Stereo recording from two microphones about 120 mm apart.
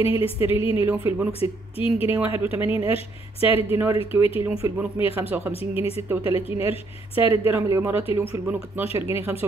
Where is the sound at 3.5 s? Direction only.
20° right (ahead or behind).